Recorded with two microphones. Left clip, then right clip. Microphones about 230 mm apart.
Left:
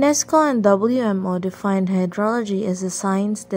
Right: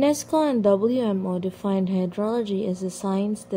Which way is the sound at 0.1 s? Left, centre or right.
Left.